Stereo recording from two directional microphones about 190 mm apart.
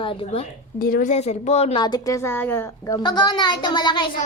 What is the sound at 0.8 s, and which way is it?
A woman's voice, 50° left (ahead or behind).